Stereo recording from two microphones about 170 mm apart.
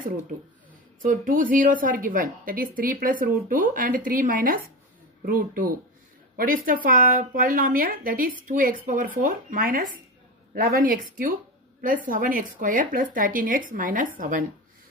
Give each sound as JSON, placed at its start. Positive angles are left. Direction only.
{"t": 1.0, "sound": "a woman's voice", "side_deg": -55}